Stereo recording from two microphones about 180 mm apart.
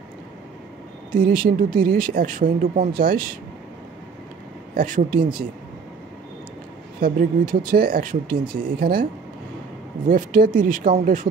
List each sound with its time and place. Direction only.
1.1 s speech: 50° right (ahead or behind)
4.7 s speech: 50° right (ahead or behind)
7.0 s speech: 50° right (ahead or behind)
10.0 s speech: 50° right (ahead or behind)